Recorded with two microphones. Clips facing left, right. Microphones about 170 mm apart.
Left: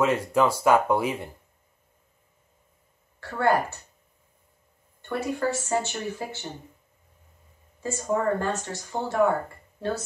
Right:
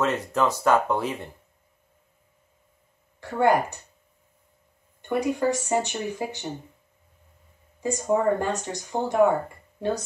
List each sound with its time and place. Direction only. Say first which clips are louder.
0.0 s speech: left 2 dB; 10° left (ahead or behind)
3.2 s speech: right 2 dB; 15° right (ahead or behind)
5.0 s speech: right 3 dB; 15° right (ahead or behind)
7.8 s speech: right 3 dB; 15° right (ahead or behind)